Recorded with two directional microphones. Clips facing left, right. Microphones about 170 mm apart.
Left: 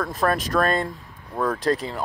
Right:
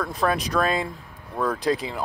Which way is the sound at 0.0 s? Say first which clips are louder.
Left 1 dB; centre (ahead or behind).